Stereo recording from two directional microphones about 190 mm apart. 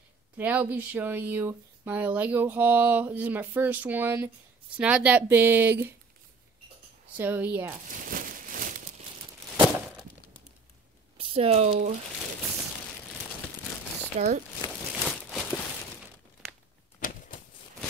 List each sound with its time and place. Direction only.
0.4 s speech: 10° right (ahead or behind)
7.2 s speech: 10° right (ahead or behind)
7.9 s crumpling: 45° right (ahead or behind)
11.1 s speech: 30° right (ahead or behind)
14.1 s speech: 40° right (ahead or behind)
15.0 s a sound: 5° left (ahead or behind)
17.0 s typewriter: 45° left (ahead or behind)